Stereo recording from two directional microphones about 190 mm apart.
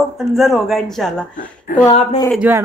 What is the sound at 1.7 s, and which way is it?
Speech, 50° left (ahead or behind).